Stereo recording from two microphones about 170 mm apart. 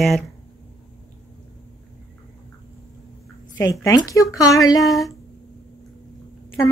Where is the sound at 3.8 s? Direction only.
20° left (ahead or behind).